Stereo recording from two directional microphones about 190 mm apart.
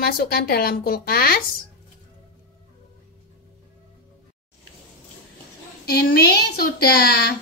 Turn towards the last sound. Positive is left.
turn(degrees=55)  # may be behind; listen again after turning